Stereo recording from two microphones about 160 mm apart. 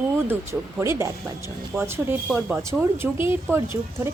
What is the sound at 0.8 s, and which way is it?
Speech, 15° right (ahead or behind).